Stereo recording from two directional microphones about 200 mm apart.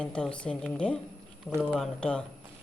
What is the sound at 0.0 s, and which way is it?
A woman's voice, 5° left (ahead or behind).